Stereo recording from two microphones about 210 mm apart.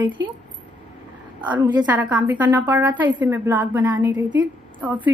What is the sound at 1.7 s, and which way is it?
A woman's voice, 5° right (ahead or behind).